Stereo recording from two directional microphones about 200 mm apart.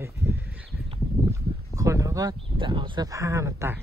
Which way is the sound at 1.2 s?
15° right (ahead or behind).